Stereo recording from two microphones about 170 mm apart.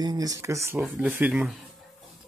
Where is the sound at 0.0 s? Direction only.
20° right (ahead or behind).